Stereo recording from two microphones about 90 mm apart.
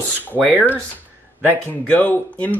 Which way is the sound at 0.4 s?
10° right (ahead or behind).